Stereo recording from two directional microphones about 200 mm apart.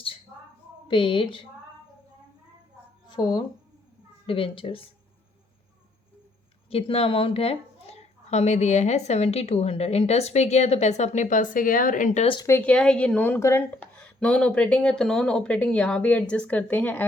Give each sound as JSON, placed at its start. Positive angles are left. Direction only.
{"t": 0.9, "sound": "a woman's voice", "side_deg": 25}
{"t": 3.1, "sound": "a woman's voice", "side_deg": 20}
{"t": 6.7, "sound": "a woman's voice", "side_deg": 30}
{"t": 12.4, "sound": "speech", "side_deg": 10}